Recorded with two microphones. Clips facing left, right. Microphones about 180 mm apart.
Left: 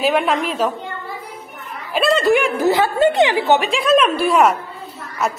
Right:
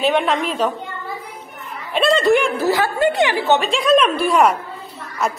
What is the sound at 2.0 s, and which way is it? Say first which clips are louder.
A woman's voice: even; 5° left (ahead or behind).